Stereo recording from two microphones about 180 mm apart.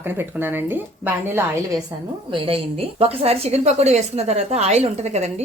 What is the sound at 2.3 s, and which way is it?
A woman's voice, 30° right (ahead or behind).